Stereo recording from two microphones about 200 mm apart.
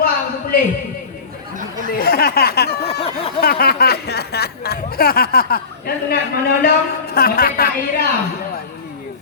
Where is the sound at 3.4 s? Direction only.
50° left (ahead or behind).